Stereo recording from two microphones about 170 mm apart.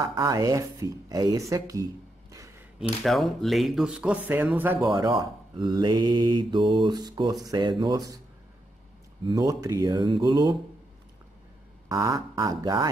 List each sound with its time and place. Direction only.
0.0 s mantra: 20° right (ahead or behind)
3.0 s speech: centre (ahead or behind)
4.8 s mantra: 30° right (ahead or behind)
9.3 s mantra: 20° right (ahead or behind)
11.9 s mantra: 20° right (ahead or behind)